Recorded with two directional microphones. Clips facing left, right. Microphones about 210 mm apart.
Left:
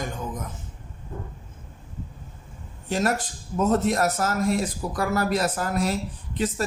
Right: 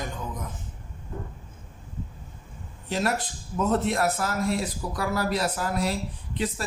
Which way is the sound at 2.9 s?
45° left (ahead or behind).